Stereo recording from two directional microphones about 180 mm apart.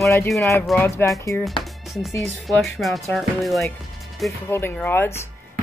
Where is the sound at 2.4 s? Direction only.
Centre (ahead or behind).